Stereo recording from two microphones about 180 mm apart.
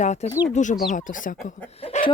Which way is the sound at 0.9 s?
45° left (ahead or behind).